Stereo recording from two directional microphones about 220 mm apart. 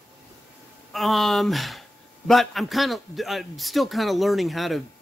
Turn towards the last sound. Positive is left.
turn(degrees=0)  # may be behind; listen again after turning